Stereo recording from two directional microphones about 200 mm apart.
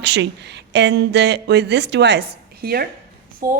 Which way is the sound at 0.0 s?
60° right (ahead or behind).